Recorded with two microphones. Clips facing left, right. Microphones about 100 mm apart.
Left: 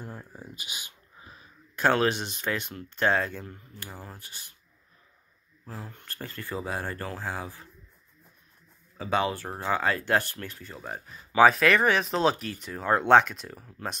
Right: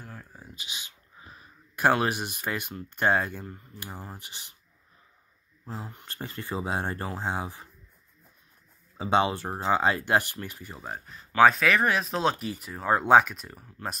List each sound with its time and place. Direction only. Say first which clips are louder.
0.0 s a sound: left 4 dB; 15° left (ahead or behind)
1.3 s speech: right 1 dB; 10° right (ahead or behind)
5.7 s speech: right 2 dB; 15° right (ahead or behind)
8.9 s speech: right 3 dB; 25° right (ahead or behind)
10.9 s speech: right 1 dB; centre (ahead or behind)